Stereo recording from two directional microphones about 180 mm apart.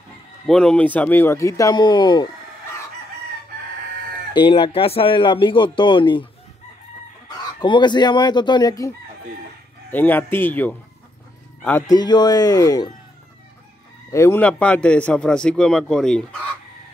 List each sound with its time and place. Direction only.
0.5 s a man's voice: 5° left (ahead or behind); by 2.2 s 25° left (ahead or behind)
4.3 s speech: 25° left (ahead or behind)
7.2 s speech: 25° left (ahead or behind)
9.8 s a man's voice: 10° left (ahead or behind)
11.9 s speech: 25° left (ahead or behind)
14.1 s a man's voice: 15° left (ahead or behind)